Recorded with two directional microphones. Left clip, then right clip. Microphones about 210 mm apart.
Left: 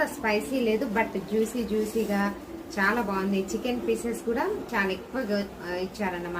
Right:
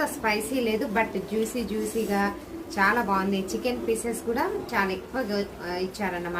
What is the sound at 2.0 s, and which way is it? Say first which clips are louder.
A woman's voice: right 2 dB; 20° right (ahead or behind).